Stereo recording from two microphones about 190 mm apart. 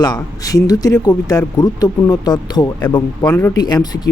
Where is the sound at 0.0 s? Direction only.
20° left (ahead or behind).